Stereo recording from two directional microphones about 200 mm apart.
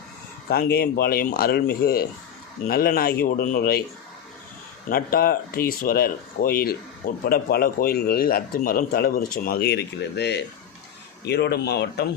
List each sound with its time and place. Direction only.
0.4 s a man's voice: 50° left (ahead or behind)
4.9 s a man's voice: 45° left (ahead or behind)